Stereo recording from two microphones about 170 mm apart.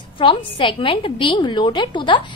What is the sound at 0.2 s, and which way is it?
A woman's voice, 30° left (ahead or behind).